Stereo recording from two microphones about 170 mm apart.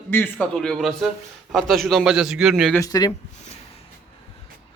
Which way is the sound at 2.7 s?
20° left (ahead or behind).